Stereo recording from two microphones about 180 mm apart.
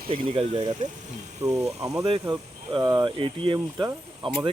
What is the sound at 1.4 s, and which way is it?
Speech, 20° right (ahead or behind).